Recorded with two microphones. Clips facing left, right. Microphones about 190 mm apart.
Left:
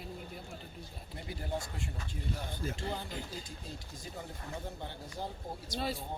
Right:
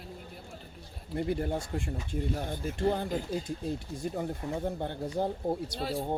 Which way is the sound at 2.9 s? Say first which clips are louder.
Right 9 dB; 55° right (ahead or behind).